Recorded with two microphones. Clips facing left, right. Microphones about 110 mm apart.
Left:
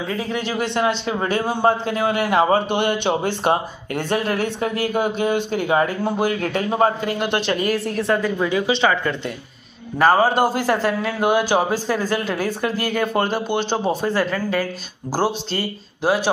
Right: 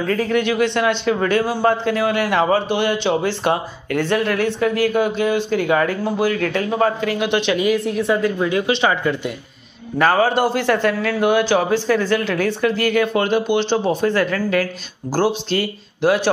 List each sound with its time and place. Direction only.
0.1 s speech: 15° left (ahead or behind)
0.4 s speech: 40° left (ahead or behind)
1.4 s speech: 20° left (ahead or behind)
1.9 s speech: 30° left (ahead or behind)
2.7 s a man's voice: 55° left (ahead or behind)
3.2 s speech: 40° left (ahead or behind)
5.6 s speech: 25° left (ahead or behind)
7.5 s speech: centre (ahead or behind)
9.9 s speech: 10° left (ahead or behind)
10.3 s speech: 40° left (ahead or behind)
10.7 s speech: 5° left (ahead or behind)